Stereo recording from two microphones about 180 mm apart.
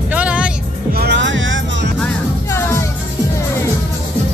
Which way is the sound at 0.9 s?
65° right (ahead or behind).